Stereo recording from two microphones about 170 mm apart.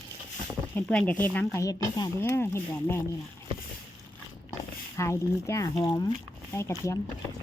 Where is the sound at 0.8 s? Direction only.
10° left (ahead or behind).